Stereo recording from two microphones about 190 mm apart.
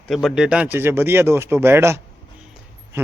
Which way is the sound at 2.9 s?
15° right (ahead or behind).